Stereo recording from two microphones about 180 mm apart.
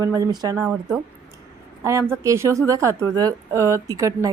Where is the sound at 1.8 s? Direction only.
15° right (ahead or behind).